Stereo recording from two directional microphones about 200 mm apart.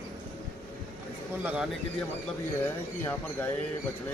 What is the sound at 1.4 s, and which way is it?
Speech, 5° right (ahead or behind).